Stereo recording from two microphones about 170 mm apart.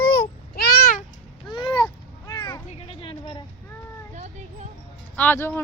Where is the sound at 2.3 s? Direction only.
20° left (ahead or behind).